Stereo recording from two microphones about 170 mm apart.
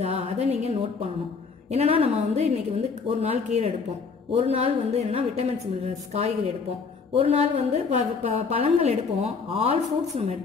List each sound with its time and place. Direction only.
0.0 s a woman's voice: 35° right (ahead or behind)